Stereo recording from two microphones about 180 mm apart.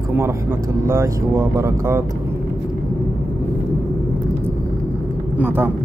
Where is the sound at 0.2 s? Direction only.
15° right (ahead or behind).